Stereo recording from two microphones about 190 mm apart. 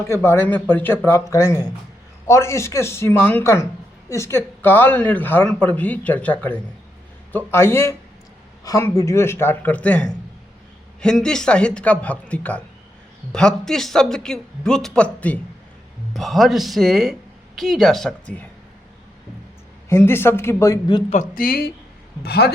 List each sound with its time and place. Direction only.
0.0 s speech: 15° left (ahead or behind)
7.3 s speech: 10° left (ahead or behind)
19.9 s speech: 10° left (ahead or behind)
21.1 s speech: 45° left (ahead or behind)